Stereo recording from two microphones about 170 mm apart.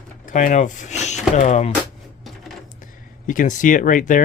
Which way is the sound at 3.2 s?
50° left (ahead or behind).